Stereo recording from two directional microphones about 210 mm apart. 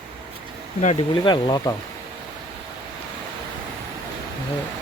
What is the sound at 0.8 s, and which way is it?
Speech, 30° left (ahead or behind).